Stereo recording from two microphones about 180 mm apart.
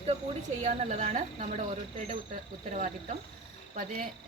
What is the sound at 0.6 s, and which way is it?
Speech, 40° right (ahead or behind).